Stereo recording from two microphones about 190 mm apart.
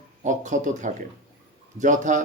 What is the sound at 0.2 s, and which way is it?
A man's voice, 40° right (ahead or behind).